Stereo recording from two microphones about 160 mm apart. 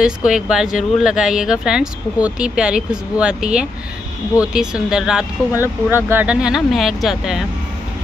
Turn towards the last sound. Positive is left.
turn(degrees=0)  # may be behind; listen again after turning